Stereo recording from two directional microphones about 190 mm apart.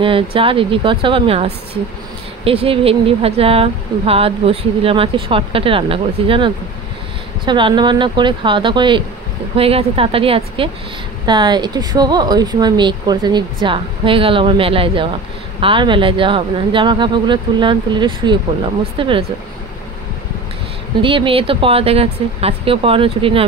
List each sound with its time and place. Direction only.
0.0 s speech: 30° right (ahead or behind)
21.0 s speech: 25° right (ahead or behind)